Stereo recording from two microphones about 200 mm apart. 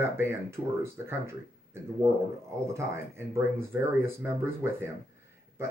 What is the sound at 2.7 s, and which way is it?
Speech, 10° right (ahead or behind).